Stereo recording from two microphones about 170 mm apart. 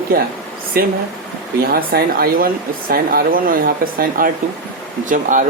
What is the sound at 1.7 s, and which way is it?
Speech, 60° right (ahead or behind).